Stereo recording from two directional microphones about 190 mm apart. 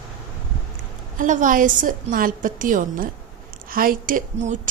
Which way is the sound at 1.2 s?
40° right (ahead or behind).